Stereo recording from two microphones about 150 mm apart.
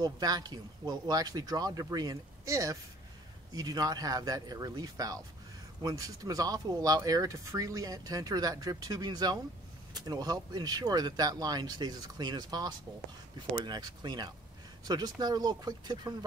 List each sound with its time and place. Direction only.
0.0 s speech: 25° right (ahead or behind)